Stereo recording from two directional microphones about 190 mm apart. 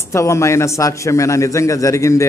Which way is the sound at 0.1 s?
15° left (ahead or behind).